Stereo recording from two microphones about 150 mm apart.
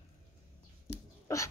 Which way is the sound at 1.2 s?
20° left (ahead or behind).